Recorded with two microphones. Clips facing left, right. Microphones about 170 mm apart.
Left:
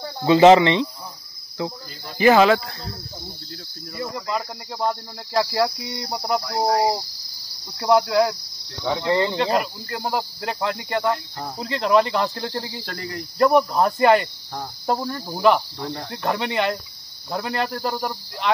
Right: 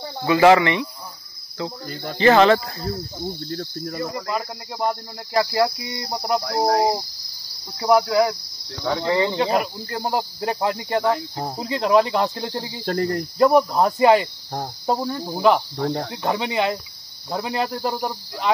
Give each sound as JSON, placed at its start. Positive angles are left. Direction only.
{"t": 0.2, "sound": "speech", "side_deg": 20}
{"t": 1.6, "sound": "cricket", "side_deg": 15}
{"t": 2.1, "sound": "speech", "side_deg": 10}
{"t": 3.4, "sound": "cricket", "side_deg": -50}
{"t": 4.7, "sound": "cricket", "side_deg": -10}
{"t": 7.8, "sound": "speech", "side_deg": 0}
{"t": 9.8, "sound": "cricket", "side_deg": -20}
{"t": 11.3, "sound": "speech", "side_deg": -30}
{"t": 11.6, "sound": "cricket", "side_deg": -10}
{"t": 12.8, "sound": "cricket", "side_deg": -45}
{"t": 13.2, "sound": "speech", "side_deg": 0}
{"t": 17.3, "sound": "cricket", "side_deg": -15}